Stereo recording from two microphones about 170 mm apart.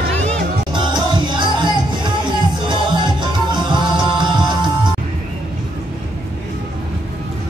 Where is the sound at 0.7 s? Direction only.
25° right (ahead or behind).